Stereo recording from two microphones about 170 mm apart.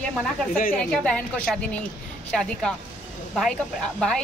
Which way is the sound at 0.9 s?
5° left (ahead or behind).